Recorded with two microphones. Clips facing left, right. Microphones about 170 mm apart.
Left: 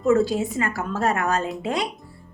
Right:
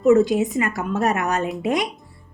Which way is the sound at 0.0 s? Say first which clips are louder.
Right 4 dB; 20° right (ahead or behind).